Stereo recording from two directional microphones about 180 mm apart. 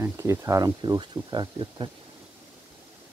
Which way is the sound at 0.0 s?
15° right (ahead or behind).